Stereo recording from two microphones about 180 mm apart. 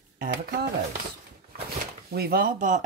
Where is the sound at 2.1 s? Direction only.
60° right (ahead or behind).